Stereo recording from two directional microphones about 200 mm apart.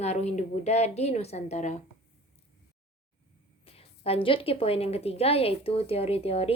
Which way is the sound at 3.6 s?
30° left (ahead or behind).